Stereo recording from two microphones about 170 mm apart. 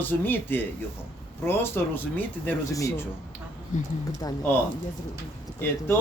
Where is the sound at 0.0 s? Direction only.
10° left (ahead or behind).